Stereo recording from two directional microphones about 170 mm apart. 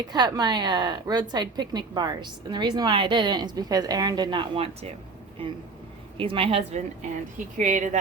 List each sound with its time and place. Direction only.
0.1 s a woman's voice: 25° right (ahead or behind); by 7.9 s 45° right (ahead or behind)